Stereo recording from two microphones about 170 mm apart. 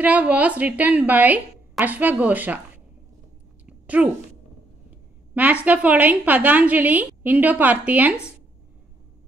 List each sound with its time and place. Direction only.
0.0 s a woman's voice: 10° right (ahead or behind)
3.6 s a sound: 10° right (ahead or behind)
5.3 s a woman's voice: 10° right (ahead or behind)